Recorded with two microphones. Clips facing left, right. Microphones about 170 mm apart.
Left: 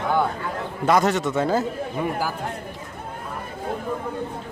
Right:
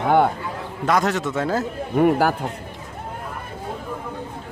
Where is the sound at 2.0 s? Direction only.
65° right (ahead or behind).